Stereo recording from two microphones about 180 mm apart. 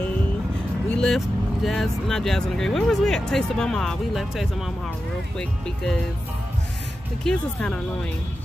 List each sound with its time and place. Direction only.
0.8 s speech: 5° left (ahead or behind)
7.2 s speech: 5° left (ahead or behind)